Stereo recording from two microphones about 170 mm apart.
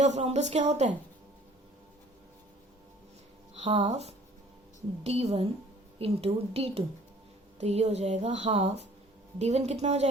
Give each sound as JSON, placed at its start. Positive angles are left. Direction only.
{"t": 0.0, "sound": "speech", "side_deg": -40}
{"t": 3.5, "sound": "a sound", "side_deg": -40}
{"t": 3.8, "sound": "speech", "side_deg": -40}